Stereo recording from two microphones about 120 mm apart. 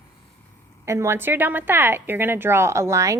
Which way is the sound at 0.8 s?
25° right (ahead or behind).